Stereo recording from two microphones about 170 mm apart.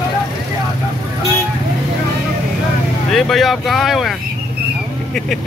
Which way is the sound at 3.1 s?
Centre (ahead or behind).